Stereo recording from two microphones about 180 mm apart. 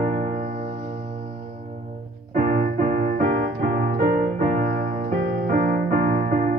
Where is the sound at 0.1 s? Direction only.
45° right (ahead or behind).